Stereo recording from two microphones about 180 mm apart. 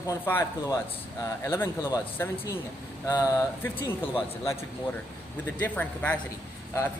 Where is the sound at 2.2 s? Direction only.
15° left (ahead or behind).